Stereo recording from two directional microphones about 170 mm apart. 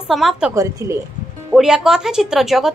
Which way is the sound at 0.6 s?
20° right (ahead or behind).